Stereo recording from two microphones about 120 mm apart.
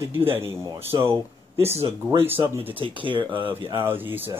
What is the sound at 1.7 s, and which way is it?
Speech, 60° right (ahead or behind).